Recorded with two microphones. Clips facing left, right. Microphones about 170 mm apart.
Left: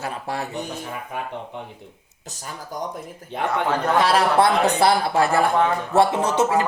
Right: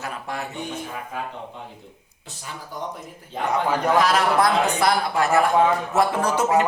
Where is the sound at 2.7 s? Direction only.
45° left (ahead or behind).